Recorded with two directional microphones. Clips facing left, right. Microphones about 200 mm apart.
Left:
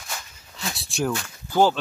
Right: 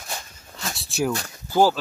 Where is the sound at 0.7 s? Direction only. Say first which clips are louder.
Right 1 dB; centre (ahead or behind).